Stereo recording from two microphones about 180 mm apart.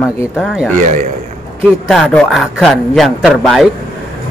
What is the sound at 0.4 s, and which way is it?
Speech, centre (ahead or behind).